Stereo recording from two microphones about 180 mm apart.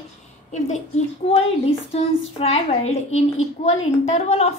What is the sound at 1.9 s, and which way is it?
A woman's voice, 35° left (ahead or behind).